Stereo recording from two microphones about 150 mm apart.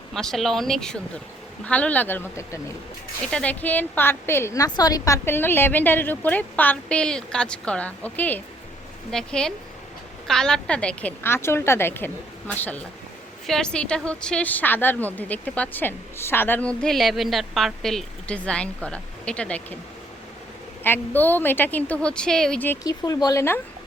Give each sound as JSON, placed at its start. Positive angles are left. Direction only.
{"t": 0.1, "sound": "a woman's voice", "side_deg": 5}
{"t": 3.3, "sound": "a woman's voice", "side_deg": 10}
{"t": 20.8, "sound": "a woman's voice", "side_deg": 15}
{"t": 22.8, "sound": "speech", "side_deg": 25}